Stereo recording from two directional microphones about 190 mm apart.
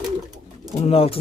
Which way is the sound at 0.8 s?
30° left (ahead or behind).